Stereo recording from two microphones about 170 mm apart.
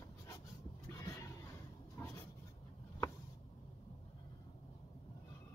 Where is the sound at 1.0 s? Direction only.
20° left (ahead or behind).